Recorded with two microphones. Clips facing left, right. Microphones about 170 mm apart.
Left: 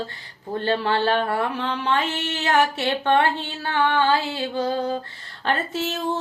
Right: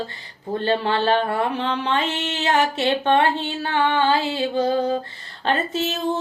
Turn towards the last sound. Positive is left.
turn(degrees=-20)  # may be behind; listen again after turning